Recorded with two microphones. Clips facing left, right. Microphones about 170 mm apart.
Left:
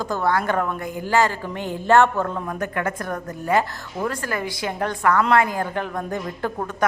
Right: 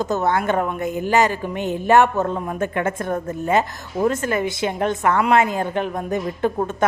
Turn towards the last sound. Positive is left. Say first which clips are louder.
# right 5 dB
turn(degrees=-20)  # may be behind; listen again after turning